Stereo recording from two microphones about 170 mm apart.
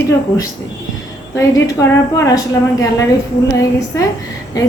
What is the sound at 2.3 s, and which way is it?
Speech, 20° left (ahead or behind).